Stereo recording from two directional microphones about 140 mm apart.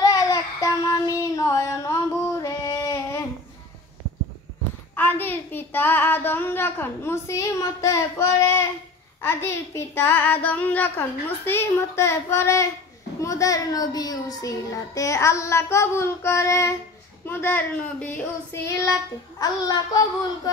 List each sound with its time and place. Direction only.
0.0 s child singing: 25° left (ahead or behind)
2.4 s female singing: 25° left (ahead or behind)
4.9 s child singing: 15° left (ahead or behind)
13.2 s a child's voice: 25° left (ahead or behind)
17.3 s child singing: 15° left (ahead or behind)